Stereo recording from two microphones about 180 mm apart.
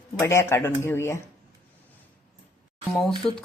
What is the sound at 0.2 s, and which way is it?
Speech, 15° left (ahead or behind).